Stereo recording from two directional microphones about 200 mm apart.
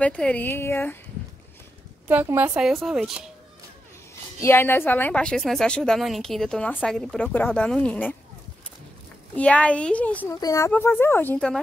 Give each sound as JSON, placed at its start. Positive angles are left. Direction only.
{"t": 0.0, "sound": "a woman's voice", "side_deg": 5}
{"t": 2.0, "sound": "a woman's voice", "side_deg": -10}
{"t": 4.1, "sound": "a woman's voice", "side_deg": 15}
{"t": 9.3, "sound": "a woman's voice", "side_deg": 5}